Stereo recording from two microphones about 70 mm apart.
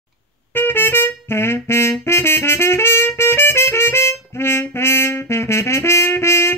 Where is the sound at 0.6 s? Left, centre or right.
Left.